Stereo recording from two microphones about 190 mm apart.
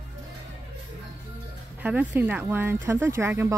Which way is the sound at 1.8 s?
10° right (ahead or behind).